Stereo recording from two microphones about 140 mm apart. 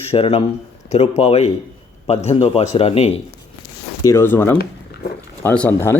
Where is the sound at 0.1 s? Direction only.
45° left (ahead or behind).